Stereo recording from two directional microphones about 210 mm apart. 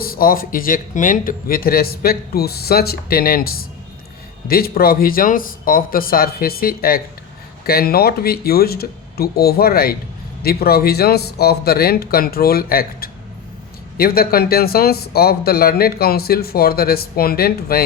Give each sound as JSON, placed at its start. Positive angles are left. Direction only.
{"t": 0.0, "sound": "speech", "side_deg": 45}